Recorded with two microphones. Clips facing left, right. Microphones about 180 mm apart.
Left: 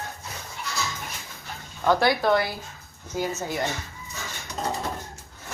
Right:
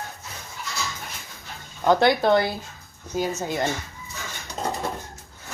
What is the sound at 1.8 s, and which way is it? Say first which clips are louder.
Speech: right 3 dB; 20° right (ahead or behind).